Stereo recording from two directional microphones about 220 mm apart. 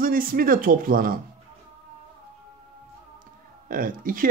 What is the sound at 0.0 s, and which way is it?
Speech, 40° right (ahead or behind).